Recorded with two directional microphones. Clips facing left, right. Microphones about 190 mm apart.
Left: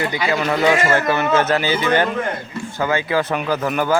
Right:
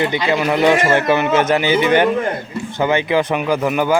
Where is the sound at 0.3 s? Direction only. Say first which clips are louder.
Right 2 dB; 10° right (ahead or behind).